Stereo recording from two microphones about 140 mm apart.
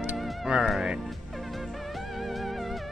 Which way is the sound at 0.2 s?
Centre (ahead or behind).